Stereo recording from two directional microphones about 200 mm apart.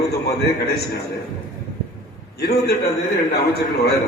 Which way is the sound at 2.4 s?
55° left (ahead or behind).